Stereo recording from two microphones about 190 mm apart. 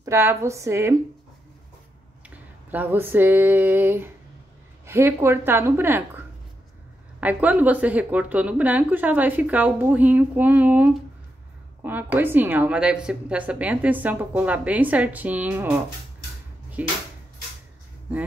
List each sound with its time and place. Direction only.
0.0 s a woman's voice: 10° right (ahead or behind)
2.2 s a sound: 10° right (ahead or behind)
4.8 s a woman's voice: 15° right (ahead or behind)
16.8 s a woman's voice: 10° right (ahead or behind)